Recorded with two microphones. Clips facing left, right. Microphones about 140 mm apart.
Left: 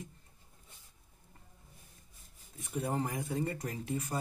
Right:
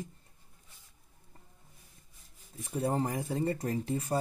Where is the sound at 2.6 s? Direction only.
30° right (ahead or behind).